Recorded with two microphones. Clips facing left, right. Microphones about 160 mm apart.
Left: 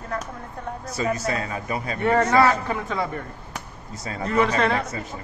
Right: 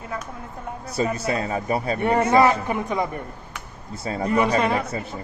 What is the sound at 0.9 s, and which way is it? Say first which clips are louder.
A man's voice: right 2 dB; 30° right (ahead or behind).